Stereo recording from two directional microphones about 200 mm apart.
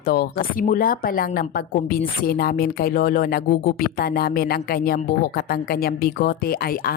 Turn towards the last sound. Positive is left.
turn(degrees=50)  # may be behind; listen again after turning